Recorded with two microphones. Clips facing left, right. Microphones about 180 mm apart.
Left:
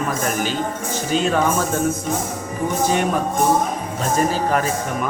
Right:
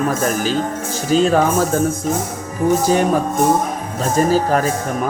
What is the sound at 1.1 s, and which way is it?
Speech, 40° right (ahead or behind).